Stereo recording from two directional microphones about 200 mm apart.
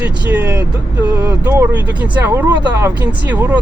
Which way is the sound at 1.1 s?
20° right (ahead or behind).